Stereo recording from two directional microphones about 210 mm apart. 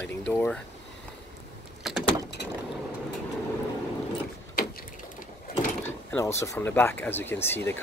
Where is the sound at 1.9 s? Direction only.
Centre (ahead or behind).